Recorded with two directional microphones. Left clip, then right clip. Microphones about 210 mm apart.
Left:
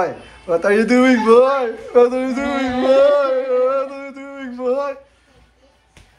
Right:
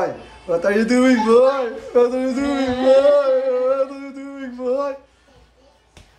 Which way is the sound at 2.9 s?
5° right (ahead or behind).